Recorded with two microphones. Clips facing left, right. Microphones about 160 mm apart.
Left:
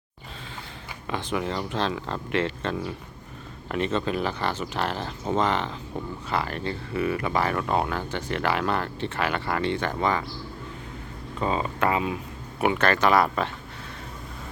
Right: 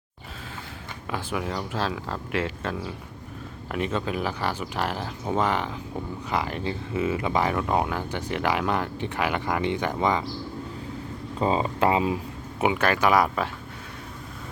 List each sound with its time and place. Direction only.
1.1 s speech: 5° right (ahead or behind)
11.3 s speech: 25° right (ahead or behind)
12.7 s speech: 10° right (ahead or behind)